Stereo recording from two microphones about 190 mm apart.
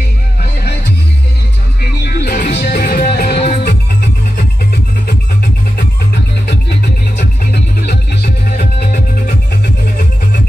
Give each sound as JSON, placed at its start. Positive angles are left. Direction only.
{"t": 1.8, "sound": "music", "side_deg": 55}
{"t": 5.8, "sound": "music", "side_deg": 60}